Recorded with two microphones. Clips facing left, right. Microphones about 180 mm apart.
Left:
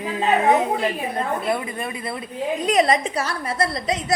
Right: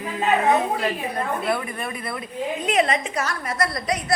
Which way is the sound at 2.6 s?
35° left (ahead or behind).